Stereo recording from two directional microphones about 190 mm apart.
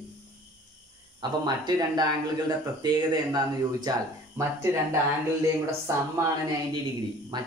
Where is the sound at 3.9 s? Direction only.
20° right (ahead or behind).